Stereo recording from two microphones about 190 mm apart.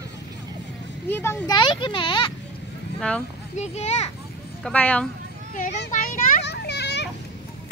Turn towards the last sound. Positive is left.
turn(degrees=65)  # may be behind; listen again after turning